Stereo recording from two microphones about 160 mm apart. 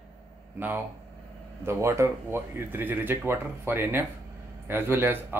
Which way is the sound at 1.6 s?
15° right (ahead or behind).